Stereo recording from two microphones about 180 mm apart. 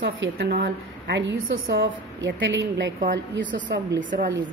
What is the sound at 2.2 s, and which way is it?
A woman's voice, 90° right.